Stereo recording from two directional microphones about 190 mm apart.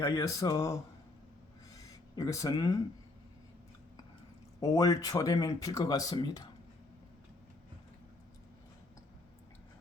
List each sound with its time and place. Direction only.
0.0 s speech: 15° left (ahead or behind)
1.8 s a sound: 20° left (ahead or behind)
4.6 s speech: 15° left (ahead or behind)